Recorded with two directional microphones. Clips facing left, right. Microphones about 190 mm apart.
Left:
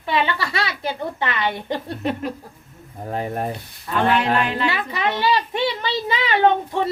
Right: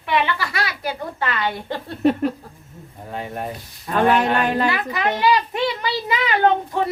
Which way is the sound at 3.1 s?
35° left (ahead or behind).